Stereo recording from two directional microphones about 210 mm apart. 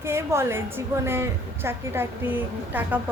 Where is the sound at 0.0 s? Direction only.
10° right (ahead or behind).